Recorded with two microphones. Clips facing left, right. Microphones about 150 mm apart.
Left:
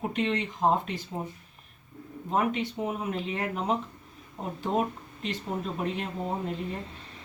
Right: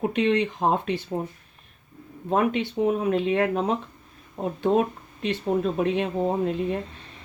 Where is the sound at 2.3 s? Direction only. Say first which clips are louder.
Right 5 dB; 70° right (ahead or behind).